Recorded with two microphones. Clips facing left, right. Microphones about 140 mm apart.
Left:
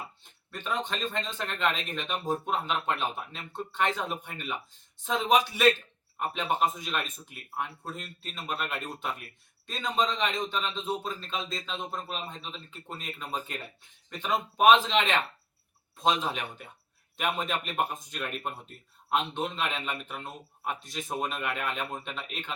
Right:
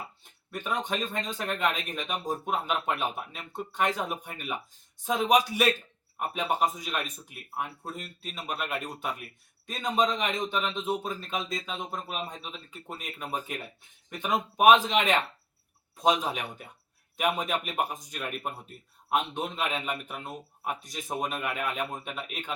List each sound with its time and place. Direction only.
0.5 s speech: 15° right (ahead or behind)
6.1 s speech: 10° right (ahead or behind)